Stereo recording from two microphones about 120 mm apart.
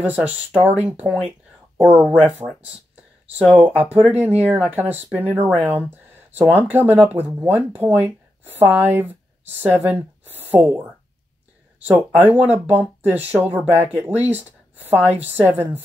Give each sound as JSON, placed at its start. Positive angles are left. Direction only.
{"t": 0.0, "sound": "speech", "side_deg": -15}
{"t": 3.6, "sound": "speech", "side_deg": -15}
{"t": 5.7, "sound": "a sound", "side_deg": -15}
{"t": 6.5, "sound": "speech", "side_deg": -20}